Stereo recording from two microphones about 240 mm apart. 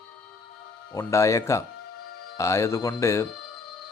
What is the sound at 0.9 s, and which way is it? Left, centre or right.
Speech, centre.